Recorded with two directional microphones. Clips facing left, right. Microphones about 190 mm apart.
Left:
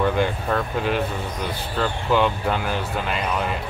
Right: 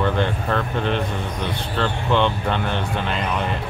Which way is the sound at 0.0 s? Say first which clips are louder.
Even; 10° left (ahead or behind).